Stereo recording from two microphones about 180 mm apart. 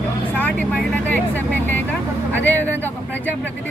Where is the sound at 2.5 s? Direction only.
10° left (ahead or behind).